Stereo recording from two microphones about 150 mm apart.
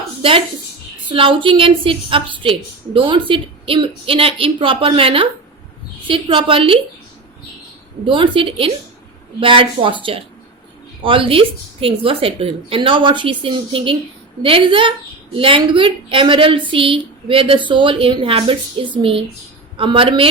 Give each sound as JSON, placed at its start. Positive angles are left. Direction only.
{"t": 0.2, "sound": "a woman's voice", "side_deg": -35}
{"t": 8.0, "sound": "a woman's voice", "side_deg": -35}